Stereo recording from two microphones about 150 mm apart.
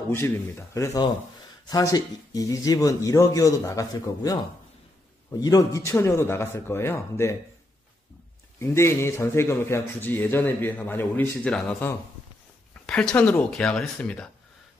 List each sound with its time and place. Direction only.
0.1 s a man's voice: 15° left (ahead or behind)
8.5 s speech: 15° left (ahead or behind)